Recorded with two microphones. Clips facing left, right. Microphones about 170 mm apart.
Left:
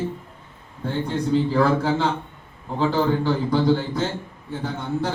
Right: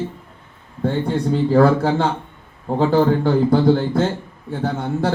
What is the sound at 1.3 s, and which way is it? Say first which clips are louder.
A man's voice: right 5 dB; 45° right (ahead or behind).